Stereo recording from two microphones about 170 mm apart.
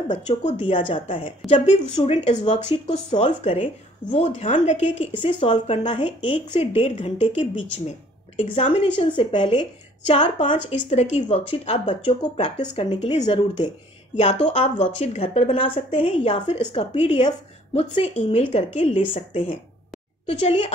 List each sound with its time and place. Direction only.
0.4 s a woman's voice: 30° left (ahead or behind)
8.4 s a woman's voice: 30° left (ahead or behind)
10.1 s a woman's voice: 45° left (ahead or behind); by 13.7 s 25° left (ahead or behind)
14.1 s a woman's voice: 40° left (ahead or behind)